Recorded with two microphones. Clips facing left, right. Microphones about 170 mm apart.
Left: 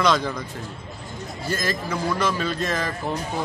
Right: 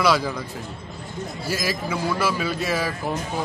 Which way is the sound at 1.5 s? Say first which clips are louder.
Even; 10° right (ahead or behind).